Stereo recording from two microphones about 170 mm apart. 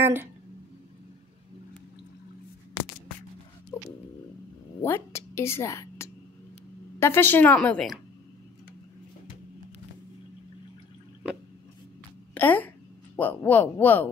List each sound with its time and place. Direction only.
0.0 s speech: 15° right (ahead or behind)
4.8 s a woman's voice: 15° left (ahead or behind)
12.4 s speech: 10° left (ahead or behind)